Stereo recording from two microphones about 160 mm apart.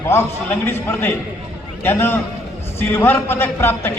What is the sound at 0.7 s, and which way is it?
A man's voice, 15° left (ahead or behind).